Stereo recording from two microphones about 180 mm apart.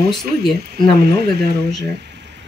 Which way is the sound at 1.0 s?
65° right (ahead or behind).